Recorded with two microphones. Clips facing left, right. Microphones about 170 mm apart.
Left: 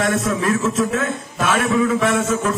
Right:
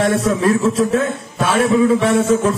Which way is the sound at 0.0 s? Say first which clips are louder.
Right 4 dB; 30° right (ahead or behind).